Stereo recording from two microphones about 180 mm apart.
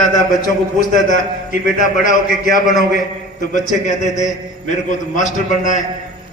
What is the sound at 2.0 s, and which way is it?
A man's voice, 45° left (ahead or behind).